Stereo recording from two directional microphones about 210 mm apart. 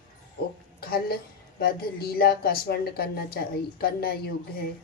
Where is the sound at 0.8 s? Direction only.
45° left (ahead or behind).